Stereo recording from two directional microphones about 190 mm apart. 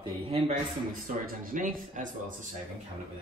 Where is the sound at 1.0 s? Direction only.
45° right (ahead or behind).